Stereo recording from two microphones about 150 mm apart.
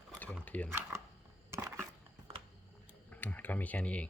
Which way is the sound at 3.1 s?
10° left (ahead or behind).